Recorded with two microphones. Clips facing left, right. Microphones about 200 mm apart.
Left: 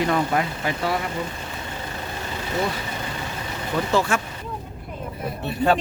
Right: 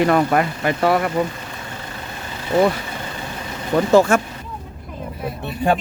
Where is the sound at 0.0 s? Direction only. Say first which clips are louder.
Right 5 dB; 60° right (ahead or behind).